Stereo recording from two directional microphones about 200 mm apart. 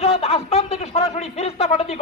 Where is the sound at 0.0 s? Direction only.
30° left (ahead or behind).